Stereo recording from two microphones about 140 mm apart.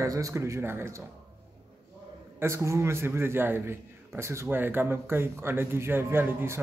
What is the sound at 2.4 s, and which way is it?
A man's voice, 20° right (ahead or behind).